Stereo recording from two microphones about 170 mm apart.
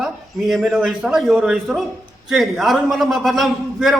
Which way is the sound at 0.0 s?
Centre (ahead or behind).